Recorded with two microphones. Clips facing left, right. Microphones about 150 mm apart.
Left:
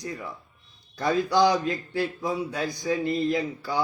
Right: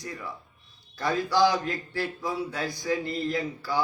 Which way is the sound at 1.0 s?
20° left (ahead or behind).